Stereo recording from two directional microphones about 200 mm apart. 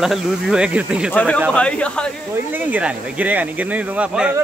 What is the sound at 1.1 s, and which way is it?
Speech, 5° left (ahead or behind).